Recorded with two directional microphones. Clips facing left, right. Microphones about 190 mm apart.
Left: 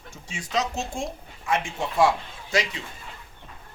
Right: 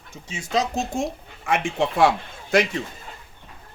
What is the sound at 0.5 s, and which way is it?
Speech, 40° right (ahead or behind).